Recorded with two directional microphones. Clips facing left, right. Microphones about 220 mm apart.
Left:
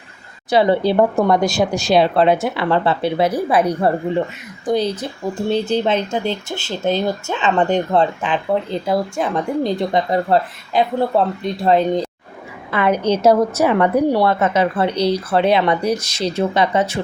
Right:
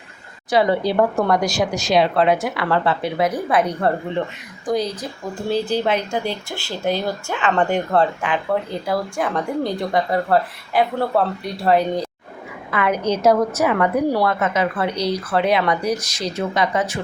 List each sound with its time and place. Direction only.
0.5 s speech: 30° left (ahead or behind)
4.6 s speech: 25° left (ahead or behind)